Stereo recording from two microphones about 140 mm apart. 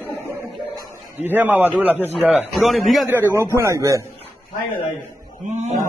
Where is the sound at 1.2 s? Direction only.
15° right (ahead or behind).